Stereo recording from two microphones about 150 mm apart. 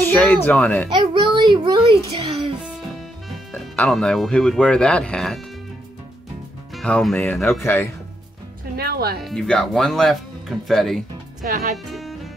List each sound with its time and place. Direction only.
0.0 s a child's voice: 10° left (ahead or behind)
0.9 s a child's voice: 30° right (ahead or behind)
3.3 s speech: 5° left (ahead or behind)
6.7 s speech: 5° left (ahead or behind)
7.4 s speech: 15° left (ahead or behind)
8.7 s music: 90° right
9.2 s speech: 5° left (ahead or behind)
11.4 s speech: 75° right (ahead or behind)
11.7 s music: centre (ahead or behind)